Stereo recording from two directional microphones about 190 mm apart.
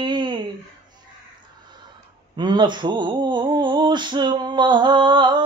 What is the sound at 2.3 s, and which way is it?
Mantra, 25° right (ahead or behind).